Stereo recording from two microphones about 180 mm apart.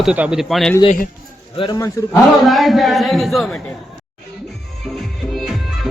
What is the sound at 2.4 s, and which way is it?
A man's voice, centre (ahead or behind).